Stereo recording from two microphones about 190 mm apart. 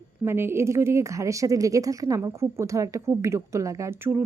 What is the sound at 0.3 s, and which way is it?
A woman's voice, 10° right (ahead or behind).